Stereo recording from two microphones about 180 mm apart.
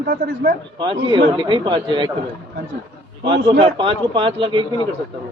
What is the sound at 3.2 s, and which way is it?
A man's voice, 30° right (ahead or behind).